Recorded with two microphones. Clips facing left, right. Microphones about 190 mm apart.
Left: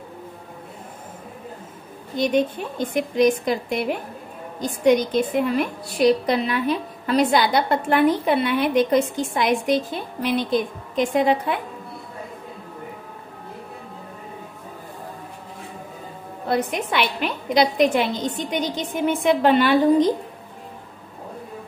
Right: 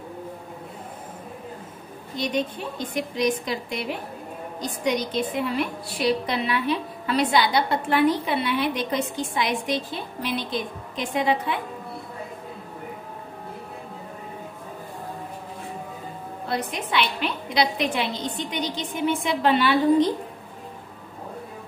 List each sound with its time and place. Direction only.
2.1 s a woman's voice: 50° left (ahead or behind)
16.4 s a woman's voice: 50° left (ahead or behind)